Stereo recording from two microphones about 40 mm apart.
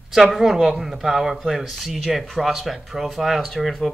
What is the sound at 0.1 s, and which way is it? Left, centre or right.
Speech, centre.